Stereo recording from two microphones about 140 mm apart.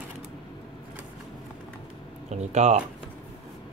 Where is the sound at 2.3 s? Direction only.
55° right (ahead or behind).